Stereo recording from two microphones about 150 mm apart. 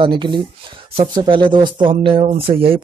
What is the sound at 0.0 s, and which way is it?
Speech, 30° right (ahead or behind).